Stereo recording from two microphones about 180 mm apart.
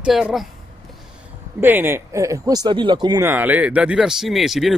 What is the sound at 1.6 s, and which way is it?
Speech, 10° right (ahead or behind).